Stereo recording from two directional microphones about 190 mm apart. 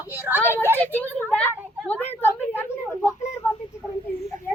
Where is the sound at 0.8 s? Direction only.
10° left (ahead or behind).